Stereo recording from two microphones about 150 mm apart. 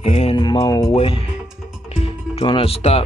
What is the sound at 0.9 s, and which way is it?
Music, 40° left (ahead or behind).